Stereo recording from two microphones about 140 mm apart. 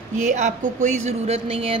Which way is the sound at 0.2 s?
60° right (ahead or behind).